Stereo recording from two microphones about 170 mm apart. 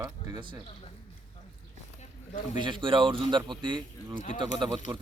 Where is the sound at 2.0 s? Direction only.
45° left (ahead or behind).